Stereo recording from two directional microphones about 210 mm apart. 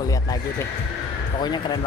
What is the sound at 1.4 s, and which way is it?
Speech, 20° left (ahead or behind).